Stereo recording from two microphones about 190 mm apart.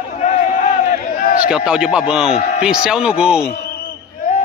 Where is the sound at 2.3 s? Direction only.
30° left (ahead or behind).